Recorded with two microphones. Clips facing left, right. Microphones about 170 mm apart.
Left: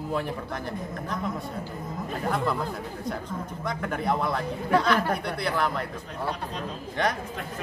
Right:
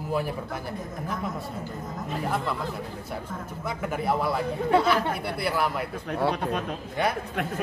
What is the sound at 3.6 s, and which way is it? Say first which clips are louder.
A man's voice: even; 5° right (ahead or behind).